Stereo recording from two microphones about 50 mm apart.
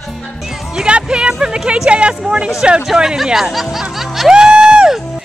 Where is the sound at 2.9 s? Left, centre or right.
Centre.